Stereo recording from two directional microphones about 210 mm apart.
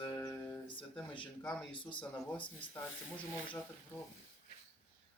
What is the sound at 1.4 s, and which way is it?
Speech, 5° left (ahead or behind).